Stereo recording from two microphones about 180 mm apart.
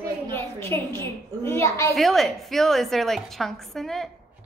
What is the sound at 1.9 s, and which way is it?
A woman's voice, centre (ahead or behind).